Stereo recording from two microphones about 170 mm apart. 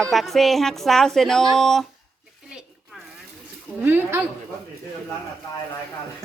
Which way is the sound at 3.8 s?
10° right (ahead or behind).